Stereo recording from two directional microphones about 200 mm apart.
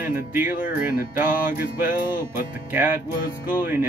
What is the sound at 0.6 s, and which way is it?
Speech, 45° left (ahead or behind).